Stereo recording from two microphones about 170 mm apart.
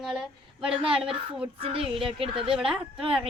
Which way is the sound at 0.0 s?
5° right (ahead or behind).